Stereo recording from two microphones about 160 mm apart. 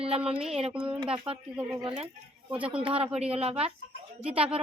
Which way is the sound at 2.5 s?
5° right (ahead or behind).